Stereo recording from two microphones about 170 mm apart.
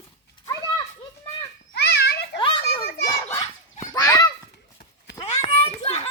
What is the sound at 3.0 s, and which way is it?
Children playing, 20° left (ahead or behind).